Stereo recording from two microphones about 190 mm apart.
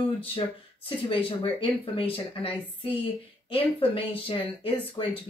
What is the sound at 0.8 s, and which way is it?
Speech, 30° left (ahead or behind).